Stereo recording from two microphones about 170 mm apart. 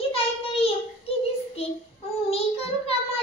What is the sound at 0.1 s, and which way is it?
Child singing, 35° left (ahead or behind).